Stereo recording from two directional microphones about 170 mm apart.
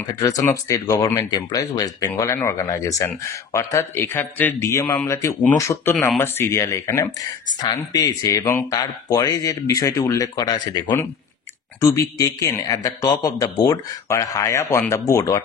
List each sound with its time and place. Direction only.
0.2 s speech: 20° left (ahead or behind)
11.8 s speech: 20° left (ahead or behind)